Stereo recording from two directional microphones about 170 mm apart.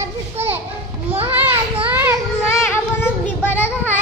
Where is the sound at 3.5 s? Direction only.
10° left (ahead or behind).